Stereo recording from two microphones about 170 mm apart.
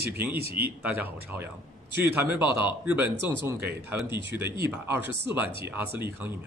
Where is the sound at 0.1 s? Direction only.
10° right (ahead or behind).